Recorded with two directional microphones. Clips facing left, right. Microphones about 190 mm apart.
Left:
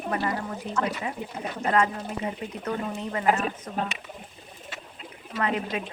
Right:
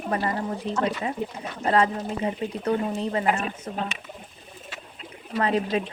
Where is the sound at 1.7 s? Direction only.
30° right (ahead or behind).